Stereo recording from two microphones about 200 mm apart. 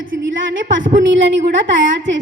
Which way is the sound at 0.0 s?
70° right (ahead or behind).